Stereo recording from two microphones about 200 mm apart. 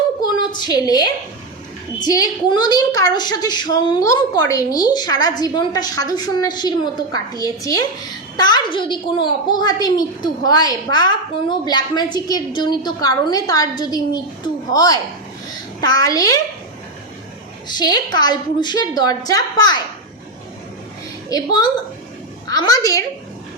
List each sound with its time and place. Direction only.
0.2 s a sound: 20° left (ahead or behind)
2.0 s a woman's voice: 20° left (ahead or behind)
17.7 s a woman's voice: 20° left (ahead or behind)
21.2 s a woman's voice: 20° left (ahead or behind)